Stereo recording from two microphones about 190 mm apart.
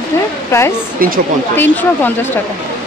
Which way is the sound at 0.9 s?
50° right (ahead or behind).